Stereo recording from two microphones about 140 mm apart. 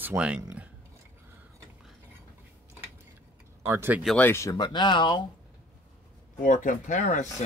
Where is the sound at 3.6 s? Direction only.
15° right (ahead or behind).